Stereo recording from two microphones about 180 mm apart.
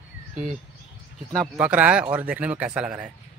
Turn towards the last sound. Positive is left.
turn(degrees=-5)  # may be behind; listen again after turning